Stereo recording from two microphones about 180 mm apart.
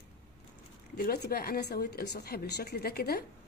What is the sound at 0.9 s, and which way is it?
Speech, 60° left (ahead or behind).